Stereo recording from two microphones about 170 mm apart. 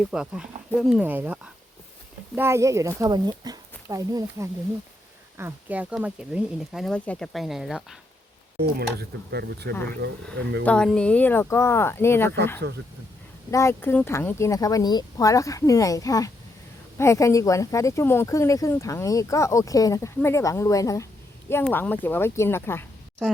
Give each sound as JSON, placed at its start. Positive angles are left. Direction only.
{"t": 0.1, "sound": "speech", "side_deg": -5}
{"t": 8.5, "sound": "speech", "side_deg": -70}
{"t": 10.6, "sound": "speech", "side_deg": 5}
{"t": 13.5, "sound": "speech", "side_deg": 15}